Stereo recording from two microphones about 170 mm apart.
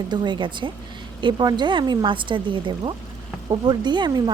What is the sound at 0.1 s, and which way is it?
A woman's voice, 25° right (ahead or behind).